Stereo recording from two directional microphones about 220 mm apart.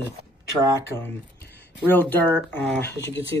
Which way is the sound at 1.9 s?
10° left (ahead or behind).